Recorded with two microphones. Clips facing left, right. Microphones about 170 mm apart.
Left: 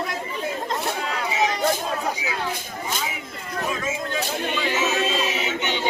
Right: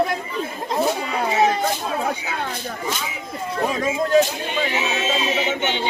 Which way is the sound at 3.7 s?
40° right (ahead or behind).